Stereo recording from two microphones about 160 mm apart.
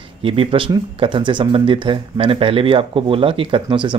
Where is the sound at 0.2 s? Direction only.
35° right (ahead or behind).